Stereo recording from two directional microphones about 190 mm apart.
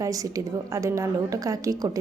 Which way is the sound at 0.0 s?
20° right (ahead or behind).